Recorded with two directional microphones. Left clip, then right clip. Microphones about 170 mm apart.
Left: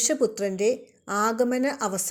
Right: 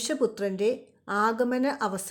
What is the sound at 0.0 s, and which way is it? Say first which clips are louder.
A woman's voice: left 3 dB; 10° left (ahead or behind).